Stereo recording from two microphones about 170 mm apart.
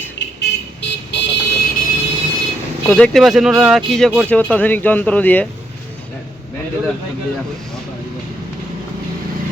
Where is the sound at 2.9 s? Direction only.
5° left (ahead or behind).